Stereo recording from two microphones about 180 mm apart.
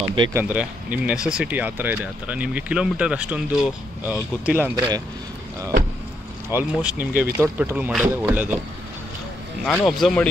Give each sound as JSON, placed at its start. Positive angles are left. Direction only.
{"t": 0.3, "sound": "speech", "side_deg": -10}
{"t": 4.7, "sound": "speech", "side_deg": -20}
{"t": 6.5, "sound": "speech", "side_deg": -10}
{"t": 9.7, "sound": "speech", "side_deg": 0}